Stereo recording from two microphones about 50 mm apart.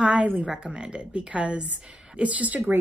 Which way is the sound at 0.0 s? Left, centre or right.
Right.